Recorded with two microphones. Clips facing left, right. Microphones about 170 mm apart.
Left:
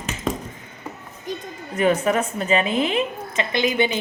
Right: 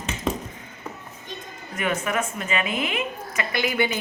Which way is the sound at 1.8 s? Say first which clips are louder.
Left 6 dB; 35° left (ahead or behind).